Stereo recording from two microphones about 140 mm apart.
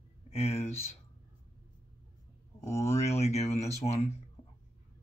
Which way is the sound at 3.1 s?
50° left (ahead or behind).